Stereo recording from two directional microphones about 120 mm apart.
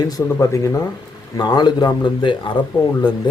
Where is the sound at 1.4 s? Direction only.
35° left (ahead or behind).